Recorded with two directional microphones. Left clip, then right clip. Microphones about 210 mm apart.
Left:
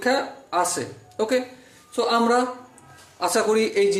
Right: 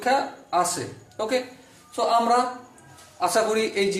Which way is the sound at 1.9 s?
40° left (ahead or behind).